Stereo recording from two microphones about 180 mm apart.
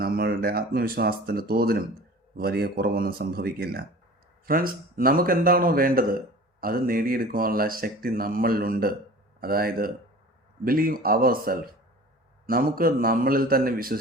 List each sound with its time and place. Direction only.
0.0 s a man's voice: 55° right (ahead or behind)